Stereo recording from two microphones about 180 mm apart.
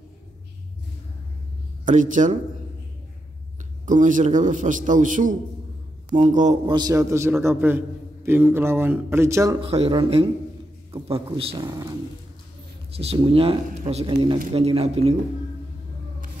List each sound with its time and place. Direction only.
1.9 s a man's voice: 45° right (ahead or behind)
3.8 s a man's voice: 45° right (ahead or behind)
6.7 s a man's voice: 20° right (ahead or behind)
9.6 s a man's voice: 30° right (ahead or behind)
12.9 s a man's voice: 35° right (ahead or behind)